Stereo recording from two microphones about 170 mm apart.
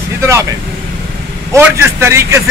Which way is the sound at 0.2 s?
20° right (ahead or behind).